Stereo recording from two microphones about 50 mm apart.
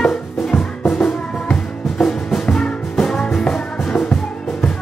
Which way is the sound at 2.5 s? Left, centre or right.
Centre.